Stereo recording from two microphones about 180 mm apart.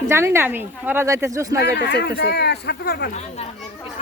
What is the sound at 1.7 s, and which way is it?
Speech, 65° left (ahead or behind).